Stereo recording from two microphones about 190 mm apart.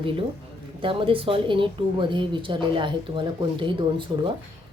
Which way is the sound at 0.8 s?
25° right (ahead or behind).